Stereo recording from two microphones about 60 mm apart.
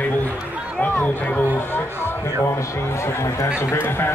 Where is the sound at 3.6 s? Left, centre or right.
Left.